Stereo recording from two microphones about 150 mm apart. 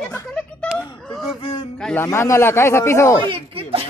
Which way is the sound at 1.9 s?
20° left (ahead or behind).